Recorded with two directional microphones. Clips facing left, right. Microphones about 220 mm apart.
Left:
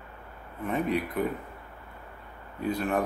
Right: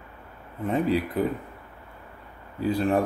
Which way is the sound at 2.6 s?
30° right (ahead or behind).